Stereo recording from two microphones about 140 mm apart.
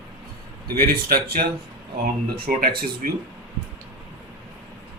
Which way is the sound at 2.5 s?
85° right.